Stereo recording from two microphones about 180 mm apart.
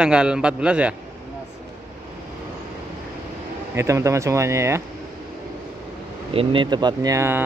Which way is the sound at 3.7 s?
15° right (ahead or behind).